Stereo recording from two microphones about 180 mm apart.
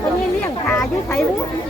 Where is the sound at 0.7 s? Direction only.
5° left (ahead or behind).